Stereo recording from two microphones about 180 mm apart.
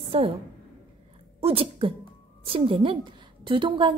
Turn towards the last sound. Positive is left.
turn(degrees=-25)  # may be behind; listen again after turning